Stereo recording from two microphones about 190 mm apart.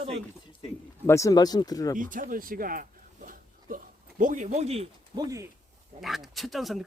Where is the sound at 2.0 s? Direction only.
45° right (ahead or behind).